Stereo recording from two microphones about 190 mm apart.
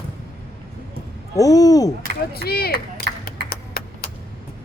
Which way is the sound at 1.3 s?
20° left (ahead or behind).